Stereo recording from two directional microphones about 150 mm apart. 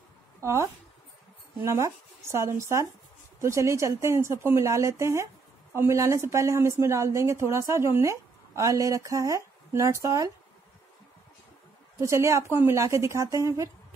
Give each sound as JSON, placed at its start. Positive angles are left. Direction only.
{"t": 0.4, "sound": "a woman's voice", "side_deg": -20}
{"t": 12.0, "sound": "speech", "side_deg": -20}